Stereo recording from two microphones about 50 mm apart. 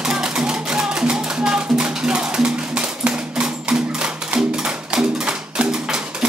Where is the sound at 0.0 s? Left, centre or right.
Centre.